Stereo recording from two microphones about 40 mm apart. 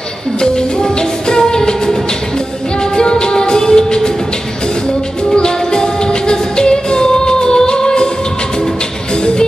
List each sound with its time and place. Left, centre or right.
0.4 s music: centre
5.3 s music: centre